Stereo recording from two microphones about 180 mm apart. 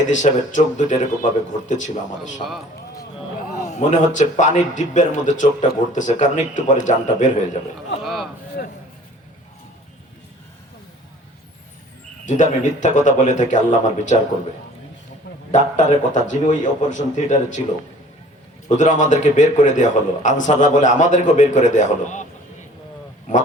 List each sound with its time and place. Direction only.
0.1 s a man's voice: 45° left (ahead or behind)
3.5 s a man's voice: 40° left (ahead or behind)
8.0 s a sound: centre (ahead or behind)
12.2 s a man's voice: 40° left (ahead or behind)
15.5 s a man's voice: 45° left (ahead or behind)
18.8 s a man's voice: 45° left (ahead or behind)